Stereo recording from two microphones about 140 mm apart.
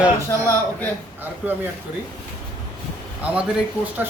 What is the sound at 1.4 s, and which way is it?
Speech, 10° right (ahead or behind).